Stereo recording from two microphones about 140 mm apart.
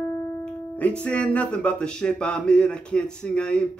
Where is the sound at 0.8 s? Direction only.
10° left (ahead or behind).